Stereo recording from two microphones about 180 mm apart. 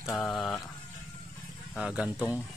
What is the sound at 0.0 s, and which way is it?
Speech, 5° left (ahead or behind).